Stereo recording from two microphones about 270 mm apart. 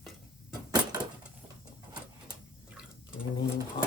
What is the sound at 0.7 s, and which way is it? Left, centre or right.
Door, centre.